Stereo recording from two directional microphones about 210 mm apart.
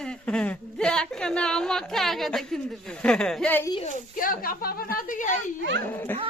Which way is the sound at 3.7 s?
35° left (ahead or behind).